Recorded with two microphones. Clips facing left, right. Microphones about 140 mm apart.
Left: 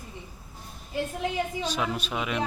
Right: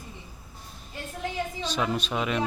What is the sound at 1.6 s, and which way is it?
Speech, 5° left (ahead or behind).